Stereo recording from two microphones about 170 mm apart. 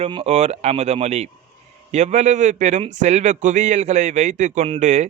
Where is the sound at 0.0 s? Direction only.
40° right (ahead or behind).